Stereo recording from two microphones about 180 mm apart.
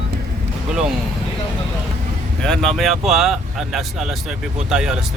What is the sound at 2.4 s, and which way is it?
Speech, centre (ahead or behind).